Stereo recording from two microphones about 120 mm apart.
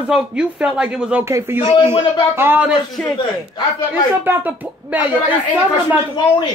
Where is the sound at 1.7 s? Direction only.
45° left (ahead or behind).